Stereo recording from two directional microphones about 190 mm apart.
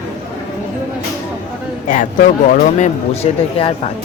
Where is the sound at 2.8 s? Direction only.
30° left (ahead or behind).